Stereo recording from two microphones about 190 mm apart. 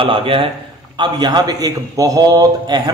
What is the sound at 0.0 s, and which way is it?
A man's voice, 30° right (ahead or behind).